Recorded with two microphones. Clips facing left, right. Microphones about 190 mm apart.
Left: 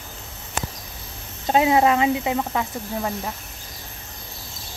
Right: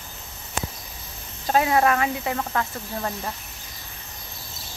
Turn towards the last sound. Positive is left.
turn(degrees=10)  # may be behind; listen again after turning